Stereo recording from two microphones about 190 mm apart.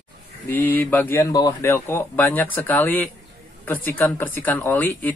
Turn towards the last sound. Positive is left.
turn(degrees=10)  # may be behind; listen again after turning